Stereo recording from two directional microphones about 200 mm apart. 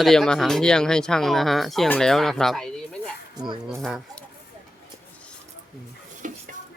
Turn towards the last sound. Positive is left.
turn(degrees=-40)  # may be behind; listen again after turning